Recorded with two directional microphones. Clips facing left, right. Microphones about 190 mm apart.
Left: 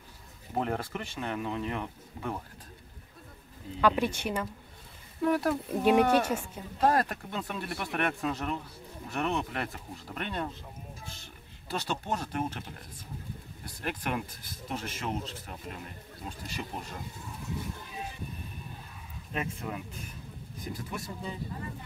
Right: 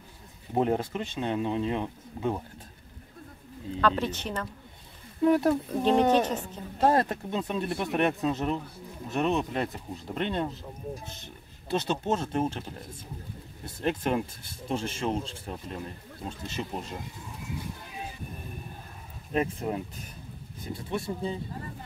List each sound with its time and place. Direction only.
0.6 s speech: 20° right (ahead or behind)
3.8 s speech: 10° left (ahead or behind)
5.2 s speech: 20° right (ahead or behind)
5.7 s speech: 10° left (ahead or behind)
6.8 s speech: 25° right (ahead or behind)
13.7 s speech: 25° right (ahead or behind)
19.3 s speech: 35° right (ahead or behind)